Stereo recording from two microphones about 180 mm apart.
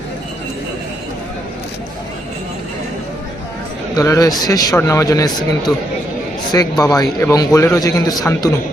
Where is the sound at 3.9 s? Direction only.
20° left (ahead or behind).